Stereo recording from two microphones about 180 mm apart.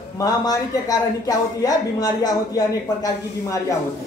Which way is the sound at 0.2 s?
20° left (ahead or behind).